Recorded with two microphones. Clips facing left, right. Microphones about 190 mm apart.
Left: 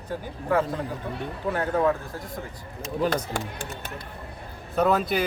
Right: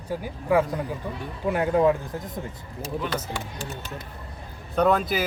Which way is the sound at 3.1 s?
50° left (ahead or behind).